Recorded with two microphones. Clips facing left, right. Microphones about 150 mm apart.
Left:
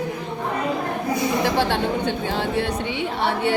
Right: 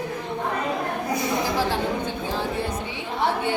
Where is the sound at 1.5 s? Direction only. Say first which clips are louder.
Left 3 dB; 70° left (ahead or behind).